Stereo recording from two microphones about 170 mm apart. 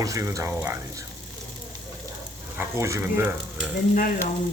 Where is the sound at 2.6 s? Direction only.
15° right (ahead or behind).